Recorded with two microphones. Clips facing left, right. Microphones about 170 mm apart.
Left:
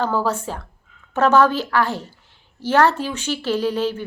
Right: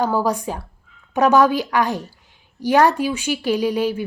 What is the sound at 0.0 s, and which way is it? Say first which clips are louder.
A woman's voice: right 2 dB; 10° right (ahead or behind).